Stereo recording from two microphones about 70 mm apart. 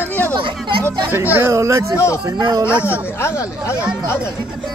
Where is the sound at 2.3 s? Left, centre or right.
Right.